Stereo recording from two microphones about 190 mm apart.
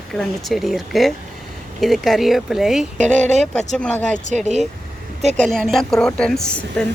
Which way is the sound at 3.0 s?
35° right (ahead or behind).